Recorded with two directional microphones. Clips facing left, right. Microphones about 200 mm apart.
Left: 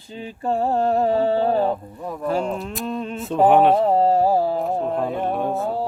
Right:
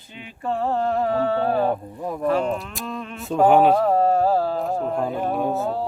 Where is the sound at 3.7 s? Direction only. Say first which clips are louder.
Left 1 dB; 25° left (ahead or behind).